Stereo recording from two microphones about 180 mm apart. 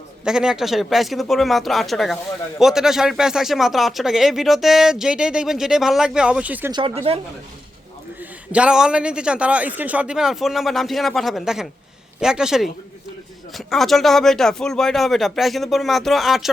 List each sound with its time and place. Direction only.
0.3 s speech: 5° right (ahead or behind)
6.7 s speech: 25° right (ahead or behind)
8.2 s speech: 5° right (ahead or behind)